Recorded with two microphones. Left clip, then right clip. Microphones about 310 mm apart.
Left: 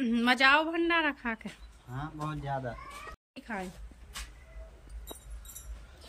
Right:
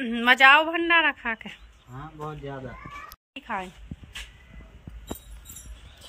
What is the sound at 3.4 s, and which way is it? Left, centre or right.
Speech, centre.